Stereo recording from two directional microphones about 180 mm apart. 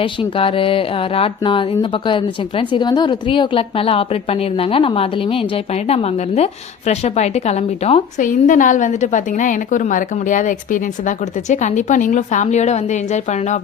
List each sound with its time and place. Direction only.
0.0 s speech: 30° left (ahead or behind)
8.2 s a woman's voice: 45° left (ahead or behind)